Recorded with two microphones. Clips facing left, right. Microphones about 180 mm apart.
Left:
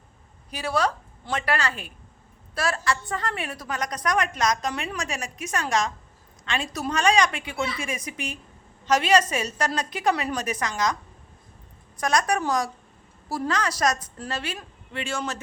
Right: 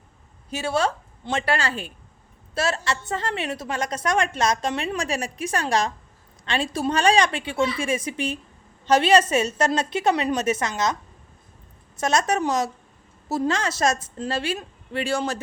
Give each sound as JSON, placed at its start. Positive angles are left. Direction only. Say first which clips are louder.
{"t": 0.5, "sound": "a woman's voice", "louder": "right 2 dB", "side_deg": -25}
{"t": 11.9, "sound": "a woman's voice", "louder": "right 2 dB", "side_deg": -25}